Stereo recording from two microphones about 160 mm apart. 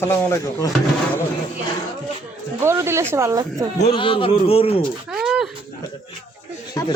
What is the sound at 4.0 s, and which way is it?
Speech, 30° left (ahead or behind).